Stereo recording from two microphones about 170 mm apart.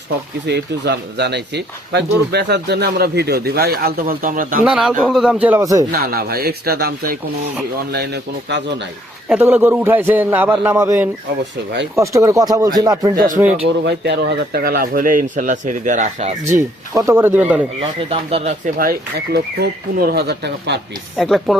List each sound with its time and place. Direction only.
0.4 s speech: 80° right; by 4.6 s 55° right (ahead or behind)
4.6 s a man's voice: 5° right (ahead or behind)
5.9 s speech: 60° right (ahead or behind)
7.9 s a man's voice: 85° right
9.3 s a man's voice: 10° right (ahead or behind)
13.1 s speech: 50° right (ahead or behind)
13.8 s speech: 80° right; by 16.6 s 45° right (ahead or behind)
16.6 s a man's voice: 15° right (ahead or behind)
17.7 s speech: 35° right (ahead or behind)
18.8 s speech: 60° right (ahead or behind); by 20.8 s 80° right
21.2 s speech: centre (ahead or behind)